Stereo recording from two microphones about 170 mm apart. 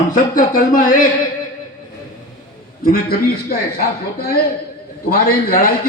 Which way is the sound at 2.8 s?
60° left (ahead or behind).